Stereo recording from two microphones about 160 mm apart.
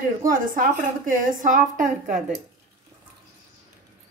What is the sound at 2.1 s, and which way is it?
Speech, 5° right (ahead or behind).